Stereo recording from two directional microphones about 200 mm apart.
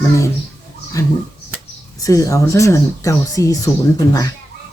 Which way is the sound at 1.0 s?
15° left (ahead or behind).